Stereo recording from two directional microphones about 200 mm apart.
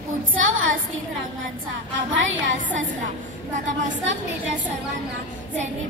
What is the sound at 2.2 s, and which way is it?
Speech, 70° right (ahead or behind).